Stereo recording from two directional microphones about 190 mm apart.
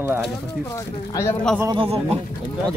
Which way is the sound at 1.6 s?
25° right (ahead or behind).